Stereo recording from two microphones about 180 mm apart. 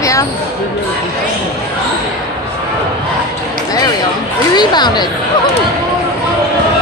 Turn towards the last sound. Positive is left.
turn(degrees=25)  # may be behind; listen again after turning